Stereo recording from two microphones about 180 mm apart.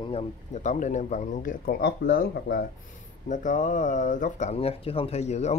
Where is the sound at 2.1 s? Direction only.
55° left (ahead or behind).